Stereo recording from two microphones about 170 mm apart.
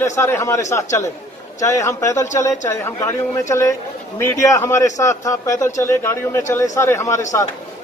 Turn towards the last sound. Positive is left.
turn(degrees=15)  # may be behind; listen again after turning